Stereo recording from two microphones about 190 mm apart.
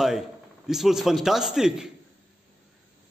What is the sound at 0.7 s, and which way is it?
A man's voice, centre (ahead or behind).